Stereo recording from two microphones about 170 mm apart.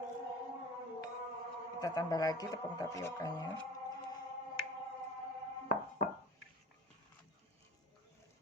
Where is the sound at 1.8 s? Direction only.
20° left (ahead or behind).